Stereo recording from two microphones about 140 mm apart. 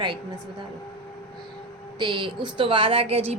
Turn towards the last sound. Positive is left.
turn(degrees=-45)  # may be behind; listen again after turning